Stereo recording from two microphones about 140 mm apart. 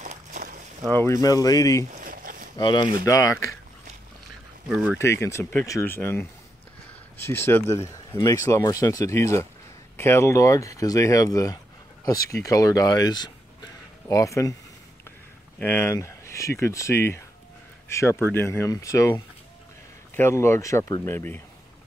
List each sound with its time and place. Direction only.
0.0 s a sound: 65° right (ahead or behind)
1.2 s speech: 25° left (ahead or behind)
1.9 s a sound: 70° right (ahead or behind)
2.5 s speech: 30° left (ahead or behind)
4.6 s speech: 10° right (ahead or behind)
4.9 s speech: 20° left (ahead or behind)
15.6 s speech: 15° left (ahead or behind)